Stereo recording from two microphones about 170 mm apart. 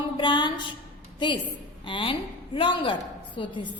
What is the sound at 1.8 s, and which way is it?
A woman's voice, 30° left (ahead or behind).